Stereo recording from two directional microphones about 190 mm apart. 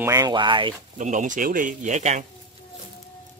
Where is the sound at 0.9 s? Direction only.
40° right (ahead or behind).